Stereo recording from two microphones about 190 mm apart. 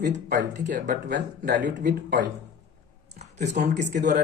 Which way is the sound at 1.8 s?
45° right (ahead or behind).